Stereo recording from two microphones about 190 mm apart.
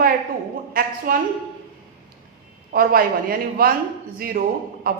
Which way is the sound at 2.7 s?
50° right (ahead or behind).